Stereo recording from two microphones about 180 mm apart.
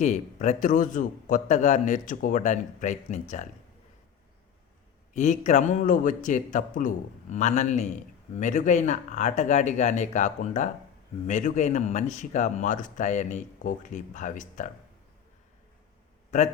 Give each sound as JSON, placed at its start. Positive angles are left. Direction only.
{"t": 0.0, "sound": "speech", "side_deg": 40}
{"t": 5.1, "sound": "speech", "side_deg": 40}
{"t": 16.3, "sound": "speech", "side_deg": 40}